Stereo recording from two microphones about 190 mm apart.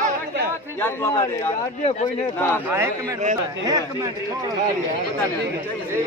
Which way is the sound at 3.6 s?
20° right (ahead or behind).